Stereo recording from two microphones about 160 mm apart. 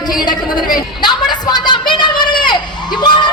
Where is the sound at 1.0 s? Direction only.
25° left (ahead or behind).